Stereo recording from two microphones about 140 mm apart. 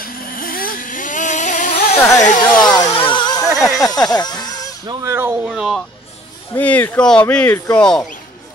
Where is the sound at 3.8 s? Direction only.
25° left (ahead or behind).